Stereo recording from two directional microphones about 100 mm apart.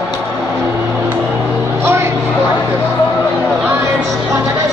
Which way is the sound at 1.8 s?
25° right (ahead or behind).